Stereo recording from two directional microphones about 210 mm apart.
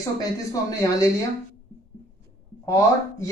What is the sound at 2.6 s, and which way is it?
Speech, 15° left (ahead or behind).